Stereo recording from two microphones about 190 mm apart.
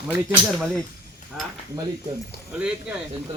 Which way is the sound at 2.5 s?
5° right (ahead or behind).